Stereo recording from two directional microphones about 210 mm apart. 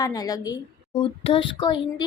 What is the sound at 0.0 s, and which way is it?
A child's voice, 15° left (ahead or behind).